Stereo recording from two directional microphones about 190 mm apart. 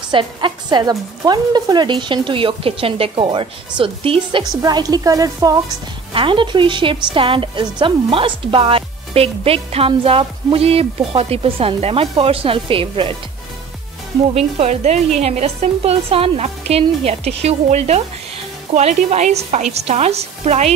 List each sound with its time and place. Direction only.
0.1 s a woman's voice: 25° right (ahead or behind)
14.3 s a woman's voice: 35° right (ahead or behind)